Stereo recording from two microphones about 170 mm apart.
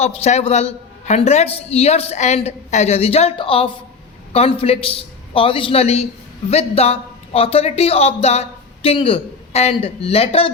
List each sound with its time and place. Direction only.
0.0 s a man's voice: 35° left (ahead or behind)